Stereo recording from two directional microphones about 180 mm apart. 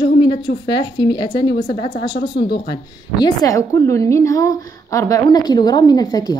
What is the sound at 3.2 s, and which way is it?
A woman's voice, 20° left (ahead or behind).